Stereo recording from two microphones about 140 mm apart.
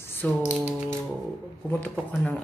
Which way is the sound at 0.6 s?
10° right (ahead or behind).